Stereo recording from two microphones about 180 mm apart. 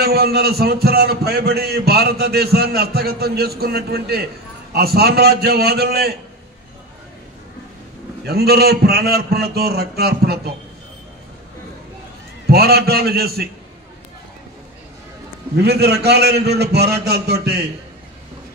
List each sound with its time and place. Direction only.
0.0 s a man's voice: 60° right (ahead or behind)
8.3 s a man's voice: 60° right (ahead or behind)
12.4 s a man's voice: 60° right (ahead or behind)
15.5 s a man's voice: 65° right (ahead or behind)